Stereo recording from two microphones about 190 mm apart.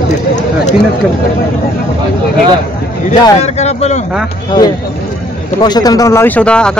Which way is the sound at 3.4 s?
35° left (ahead or behind).